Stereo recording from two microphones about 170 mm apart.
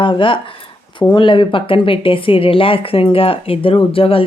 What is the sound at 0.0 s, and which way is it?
Speech, 30° left (ahead or behind).